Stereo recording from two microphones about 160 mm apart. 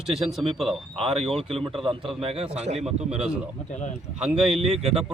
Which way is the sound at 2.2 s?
40° right (ahead or behind).